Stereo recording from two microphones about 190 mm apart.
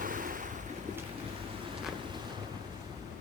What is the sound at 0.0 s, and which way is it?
Waves, 45° right (ahead or behind).